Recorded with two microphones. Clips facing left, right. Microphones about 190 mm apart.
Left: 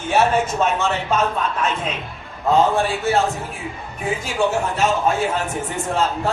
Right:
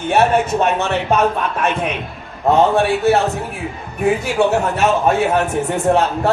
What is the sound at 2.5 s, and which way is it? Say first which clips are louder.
A man's voice: right 4 dB; 65° right (ahead or behind).